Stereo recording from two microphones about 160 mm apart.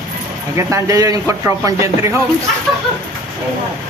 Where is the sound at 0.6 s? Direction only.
20° right (ahead or behind).